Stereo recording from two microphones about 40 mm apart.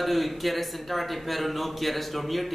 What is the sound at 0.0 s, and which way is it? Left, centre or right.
Speech, centre.